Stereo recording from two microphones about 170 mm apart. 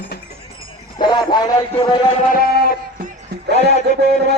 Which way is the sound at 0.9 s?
25° left (ahead or behind).